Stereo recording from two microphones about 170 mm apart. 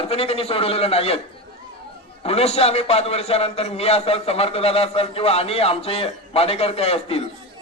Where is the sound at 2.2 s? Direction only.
35° left (ahead or behind).